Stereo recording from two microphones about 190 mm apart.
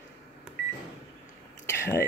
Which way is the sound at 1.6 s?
15° left (ahead or behind).